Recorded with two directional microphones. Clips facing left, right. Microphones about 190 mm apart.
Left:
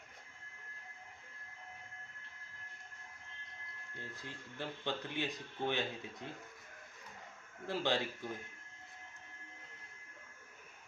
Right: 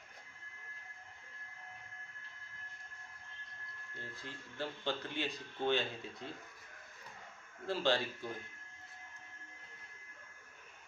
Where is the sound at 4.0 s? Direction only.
15° left (ahead or behind).